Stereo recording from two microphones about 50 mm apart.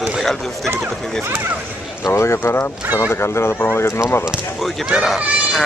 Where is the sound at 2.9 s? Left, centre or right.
Left.